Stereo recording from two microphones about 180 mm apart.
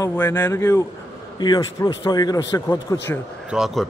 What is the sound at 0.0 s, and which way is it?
Speech, 10° left (ahead or behind).